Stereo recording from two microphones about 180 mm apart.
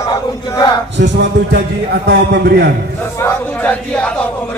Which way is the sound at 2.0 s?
65° right (ahead or behind).